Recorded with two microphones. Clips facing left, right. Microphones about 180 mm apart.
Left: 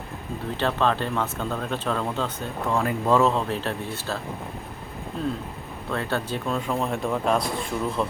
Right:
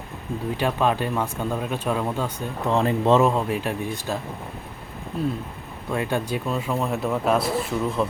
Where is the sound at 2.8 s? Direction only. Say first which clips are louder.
Right 3 dB; 25° right (ahead or behind).